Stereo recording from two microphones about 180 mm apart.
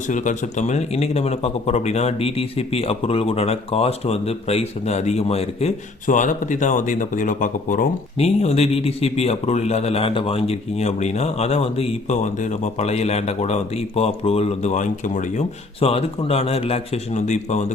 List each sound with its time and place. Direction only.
0.1 s speech: 40° left (ahead or behind)